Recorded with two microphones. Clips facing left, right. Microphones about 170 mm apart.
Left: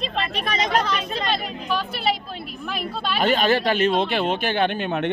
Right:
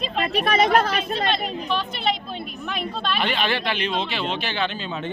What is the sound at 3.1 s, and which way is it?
Speech, 45° left (ahead or behind).